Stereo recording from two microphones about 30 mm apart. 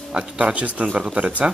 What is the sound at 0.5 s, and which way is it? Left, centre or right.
Speech, right.